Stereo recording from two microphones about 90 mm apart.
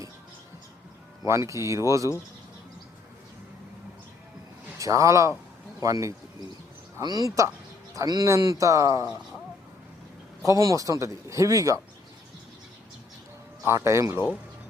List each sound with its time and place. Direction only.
1.2 s a man's voice: 35° right (ahead or behind)
4.8 s a man's voice: 35° right (ahead or behind)
10.4 s a man's voice: 40° right (ahead or behind)
13.7 s a man's voice: 30° right (ahead or behind)